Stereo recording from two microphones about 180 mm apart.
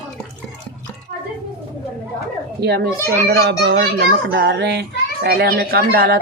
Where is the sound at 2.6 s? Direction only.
65° right (ahead or behind).